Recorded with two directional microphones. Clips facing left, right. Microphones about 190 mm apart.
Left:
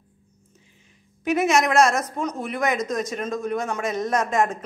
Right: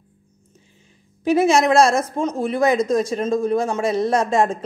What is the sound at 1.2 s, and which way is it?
Speech, 30° right (ahead or behind).